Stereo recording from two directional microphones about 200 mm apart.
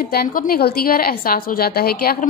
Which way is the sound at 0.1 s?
50° left (ahead or behind).